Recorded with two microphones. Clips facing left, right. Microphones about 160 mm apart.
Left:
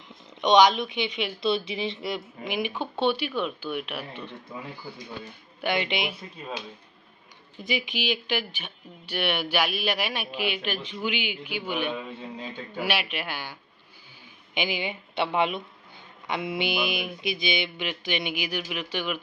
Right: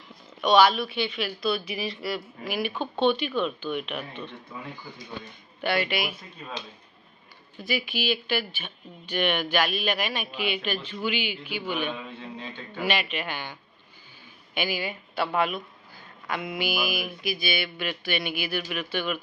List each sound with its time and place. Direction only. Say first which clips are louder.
0.4 s speech: left 1 dB; 20° left (ahead or behind)
7.6 s speech: even; 20° left (ahead or behind)